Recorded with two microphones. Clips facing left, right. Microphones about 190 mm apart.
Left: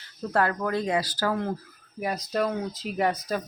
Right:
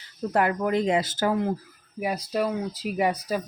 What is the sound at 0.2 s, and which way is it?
Speech, 15° right (ahead or behind).